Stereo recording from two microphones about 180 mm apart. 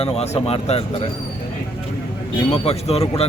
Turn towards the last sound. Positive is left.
turn(degrees=35)  # may be behind; listen again after turning